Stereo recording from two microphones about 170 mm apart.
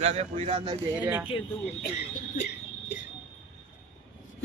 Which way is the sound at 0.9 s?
10° right (ahead or behind).